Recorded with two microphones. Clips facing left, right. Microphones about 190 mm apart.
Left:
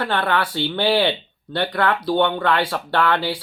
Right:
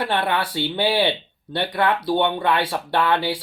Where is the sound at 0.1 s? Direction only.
20° right (ahead or behind).